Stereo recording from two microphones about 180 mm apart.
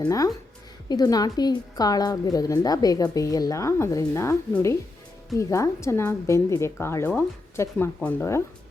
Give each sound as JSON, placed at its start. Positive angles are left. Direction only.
{"t": 0.0, "sound": "a woman's voice", "side_deg": 20}